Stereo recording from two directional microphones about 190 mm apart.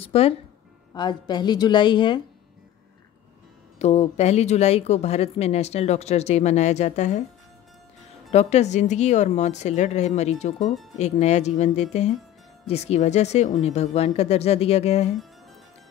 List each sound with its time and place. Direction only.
0.0 s a woman's voice: 30° left (ahead or behind)
3.8 s a woman's voice: 35° left (ahead or behind)
8.3 s a woman's voice: 35° left (ahead or behind)